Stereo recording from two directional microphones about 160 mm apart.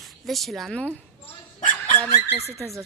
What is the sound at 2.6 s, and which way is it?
Speech, 20° right (ahead or behind).